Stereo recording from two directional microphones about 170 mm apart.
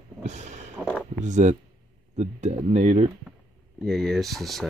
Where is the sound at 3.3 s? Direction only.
Centre (ahead or behind).